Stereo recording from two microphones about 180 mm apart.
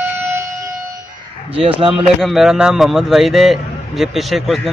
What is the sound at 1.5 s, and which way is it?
Speech, 30° right (ahead or behind).